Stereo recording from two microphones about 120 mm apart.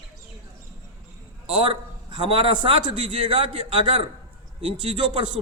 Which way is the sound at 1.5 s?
45° right (ahead or behind).